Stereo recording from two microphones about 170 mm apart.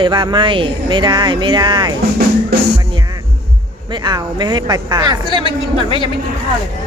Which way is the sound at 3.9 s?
25° right (ahead or behind).